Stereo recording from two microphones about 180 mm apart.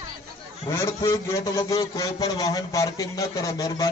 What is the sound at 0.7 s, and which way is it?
A man's voice, 15° left (ahead or behind).